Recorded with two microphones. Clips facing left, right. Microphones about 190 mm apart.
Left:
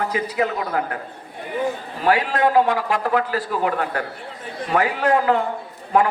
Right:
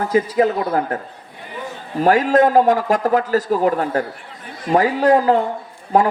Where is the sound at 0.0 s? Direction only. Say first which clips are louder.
Right 6 dB; 35° right (ahead or behind).